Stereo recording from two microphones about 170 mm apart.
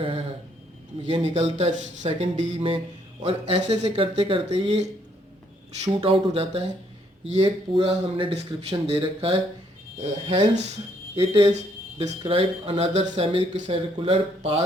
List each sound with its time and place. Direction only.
1.1 s speech: 40° right (ahead or behind)